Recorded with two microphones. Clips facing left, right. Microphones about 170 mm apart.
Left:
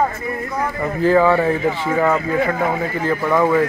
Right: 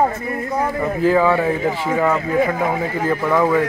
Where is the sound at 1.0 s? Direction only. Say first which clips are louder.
Left 2 dB; 5° right (ahead or behind).